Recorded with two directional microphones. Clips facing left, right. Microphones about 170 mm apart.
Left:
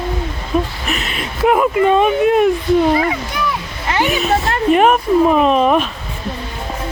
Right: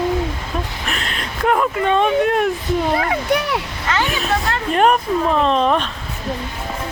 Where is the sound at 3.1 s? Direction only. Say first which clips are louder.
Right 3 dB; 65° right (ahead or behind).